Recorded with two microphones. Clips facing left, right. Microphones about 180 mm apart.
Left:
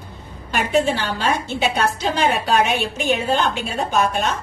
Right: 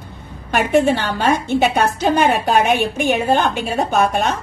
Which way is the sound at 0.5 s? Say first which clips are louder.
Right 4 dB; 60° right (ahead or behind).